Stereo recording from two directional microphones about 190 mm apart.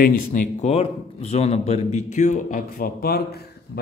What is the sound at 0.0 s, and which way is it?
Speech, 45° left (ahead or behind).